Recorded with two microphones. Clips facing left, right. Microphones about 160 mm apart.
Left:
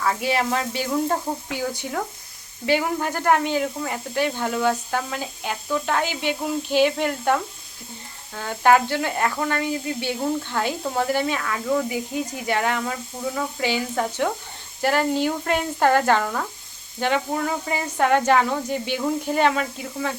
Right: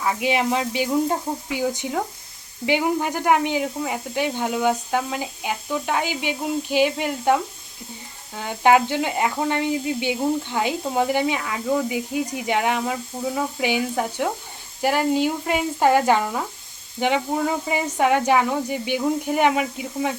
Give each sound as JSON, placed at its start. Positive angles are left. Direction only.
{"t": 0.0, "sound": "speech", "side_deg": -15}